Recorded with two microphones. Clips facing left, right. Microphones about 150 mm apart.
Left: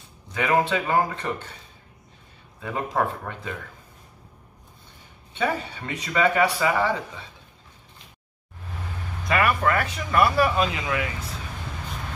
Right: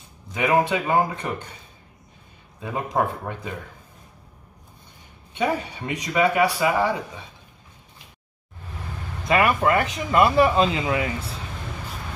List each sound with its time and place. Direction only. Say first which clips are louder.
0.3 s speech: right 2 dB; 15° right (ahead or behind)
2.6 s speech: right 1 dB; 15° right (ahead or behind)
5.3 s speech: right 2 dB; 15° right (ahead or behind)
9.3 s speech: right 3 dB; 20° right (ahead or behind)